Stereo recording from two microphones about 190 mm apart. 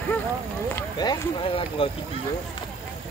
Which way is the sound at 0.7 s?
20° left (ahead or behind).